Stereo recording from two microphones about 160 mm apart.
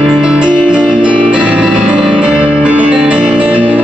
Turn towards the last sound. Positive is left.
turn(degrees=-10)  # may be behind; listen again after turning